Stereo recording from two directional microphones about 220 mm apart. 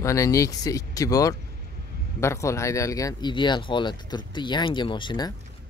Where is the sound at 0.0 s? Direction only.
15° left (ahead or behind).